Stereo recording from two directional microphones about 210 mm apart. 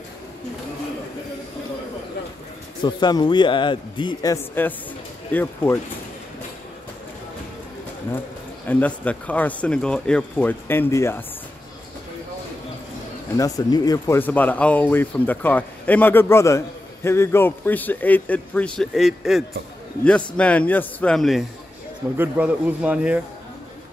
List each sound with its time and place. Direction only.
2.8 s a man's voice: 20° left (ahead or behind)
8.6 s speech: 5° left (ahead or behind)
13.4 s a man's voice: 20° left (ahead or behind); by 23.2 s 5° right (ahead or behind)